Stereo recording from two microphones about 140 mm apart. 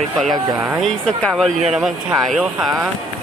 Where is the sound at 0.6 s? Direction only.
5° right (ahead or behind).